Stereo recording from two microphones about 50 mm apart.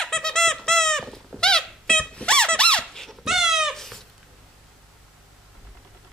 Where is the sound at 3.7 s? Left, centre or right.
Centre.